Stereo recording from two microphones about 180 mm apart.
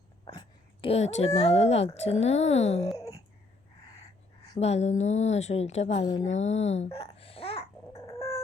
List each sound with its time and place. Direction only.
0.3 s a woman's voice: 30° left (ahead or behind)
4.5 s a woman's voice: 35° left (ahead or behind)